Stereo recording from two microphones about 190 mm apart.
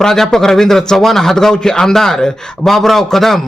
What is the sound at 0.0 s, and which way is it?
A man's voice, centre (ahead or behind).